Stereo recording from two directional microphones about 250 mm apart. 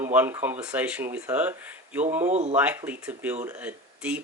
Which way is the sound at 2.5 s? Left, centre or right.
Centre.